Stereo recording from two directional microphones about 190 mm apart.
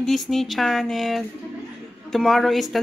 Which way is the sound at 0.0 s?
Centre (ahead or behind).